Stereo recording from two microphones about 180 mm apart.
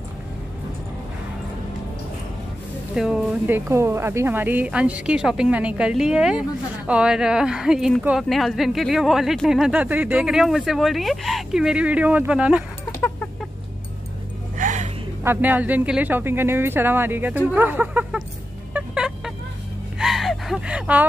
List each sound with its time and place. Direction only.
2.9 s speech: 5° right (ahead or behind)
13.0 s chicken: 10° left (ahead or behind)
14.6 s gasp: 45° right (ahead or behind)
15.2 s speech: 10° right (ahead or behind)
18.7 s music: 5° right (ahead or behind)
20.0 s gasp: centre (ahead or behind)